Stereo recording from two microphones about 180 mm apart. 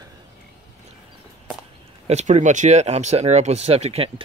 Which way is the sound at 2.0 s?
40° right (ahead or behind).